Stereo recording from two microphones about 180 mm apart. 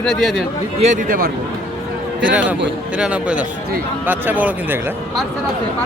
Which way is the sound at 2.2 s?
5° right (ahead or behind).